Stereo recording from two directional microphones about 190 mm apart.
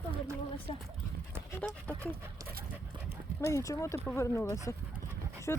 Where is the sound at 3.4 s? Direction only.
15° left (ahead or behind).